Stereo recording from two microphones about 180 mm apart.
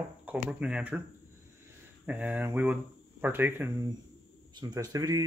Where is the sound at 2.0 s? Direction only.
10° right (ahead or behind).